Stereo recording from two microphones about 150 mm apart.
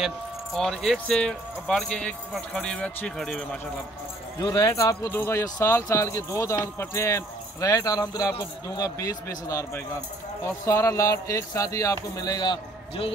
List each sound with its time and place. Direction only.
0.0 s speech: centre (ahead or behind)
4.4 s speech: 25° left (ahead or behind)